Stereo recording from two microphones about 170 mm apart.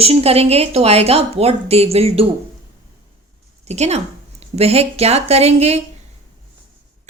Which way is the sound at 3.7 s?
40° right (ahead or behind).